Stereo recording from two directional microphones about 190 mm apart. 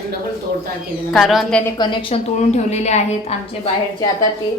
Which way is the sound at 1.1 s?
Centre (ahead or behind).